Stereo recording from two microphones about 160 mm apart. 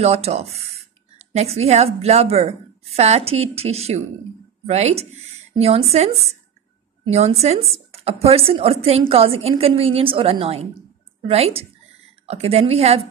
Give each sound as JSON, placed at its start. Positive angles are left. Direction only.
{"t": 0.0, "sound": "a woman's voice", "side_deg": -40}